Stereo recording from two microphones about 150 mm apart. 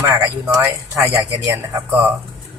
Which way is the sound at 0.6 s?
15° right (ahead or behind).